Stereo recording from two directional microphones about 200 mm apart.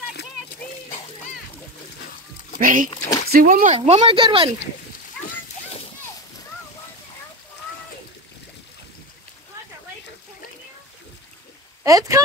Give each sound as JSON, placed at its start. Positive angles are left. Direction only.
{"t": 2.6, "sound": "speech", "side_deg": -40}
{"t": 11.8, "sound": "speech", "side_deg": -15}